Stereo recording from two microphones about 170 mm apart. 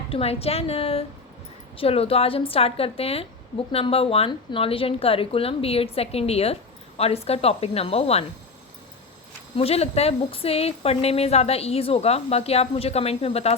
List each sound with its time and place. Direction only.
0.1 s a woman's voice: 35° left (ahead or behind)
9.6 s a woman's voice: 35° left (ahead or behind)